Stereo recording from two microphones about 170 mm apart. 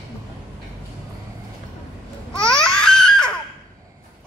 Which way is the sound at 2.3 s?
5° left (ahead or behind).